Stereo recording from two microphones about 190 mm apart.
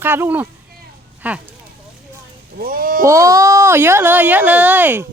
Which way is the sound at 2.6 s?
50° right (ahead or behind).